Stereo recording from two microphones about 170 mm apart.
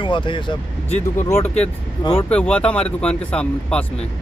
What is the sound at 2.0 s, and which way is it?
Speech, 30° left (ahead or behind).